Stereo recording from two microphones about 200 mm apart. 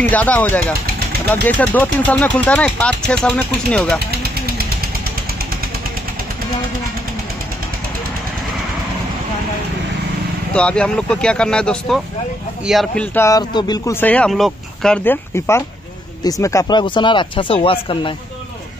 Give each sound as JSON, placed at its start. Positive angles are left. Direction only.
{"t": 0.1, "sound": "speech", "side_deg": 10}
{"t": 10.5, "sound": "speech", "side_deg": 5}